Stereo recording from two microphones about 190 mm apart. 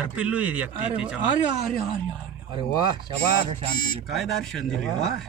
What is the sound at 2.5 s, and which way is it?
Speech, 25° right (ahead or behind).